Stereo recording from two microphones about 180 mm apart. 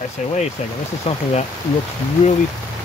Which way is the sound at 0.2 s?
40° left (ahead or behind).